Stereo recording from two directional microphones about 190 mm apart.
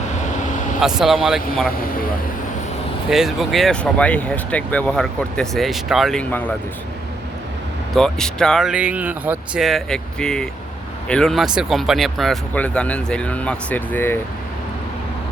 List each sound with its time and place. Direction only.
0.3 s vehicle: 40° left (ahead or behind)
0.8 s speech: centre (ahead or behind)
3.1 s speech: centre (ahead or behind)
7.9 s speech: 5° left (ahead or behind)